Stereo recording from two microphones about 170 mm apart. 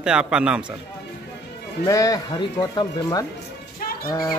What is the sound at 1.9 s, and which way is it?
Speech, 20° left (ahead or behind).